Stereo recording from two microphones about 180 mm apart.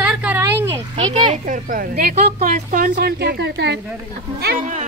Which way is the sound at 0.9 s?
40° right (ahead or behind).